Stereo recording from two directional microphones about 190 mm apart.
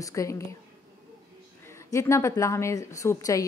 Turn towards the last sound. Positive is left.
turn(degrees=15)  # may be behind; listen again after turning